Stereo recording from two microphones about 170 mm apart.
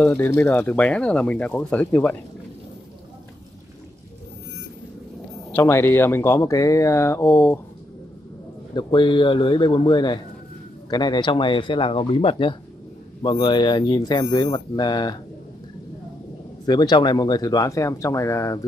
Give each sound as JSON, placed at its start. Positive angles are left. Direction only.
{"t": 0.3, "sound": "speech", "side_deg": 10}
{"t": 5.5, "sound": "speech", "side_deg": 15}
{"t": 8.7, "sound": "speech", "side_deg": 30}
{"t": 16.6, "sound": "speech", "side_deg": 25}